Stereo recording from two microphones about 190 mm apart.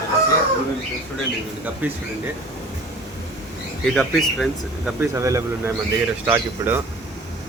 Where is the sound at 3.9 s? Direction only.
Centre (ahead or behind).